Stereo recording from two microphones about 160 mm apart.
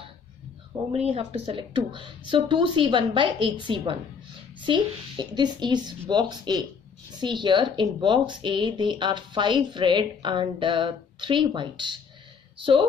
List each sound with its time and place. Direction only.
0.9 s a woman's voice: 40° right (ahead or behind)